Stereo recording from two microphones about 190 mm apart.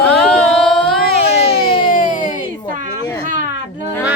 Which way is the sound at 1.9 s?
45° left (ahead or behind).